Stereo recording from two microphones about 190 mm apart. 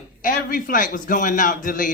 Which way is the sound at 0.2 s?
45° left (ahead or behind).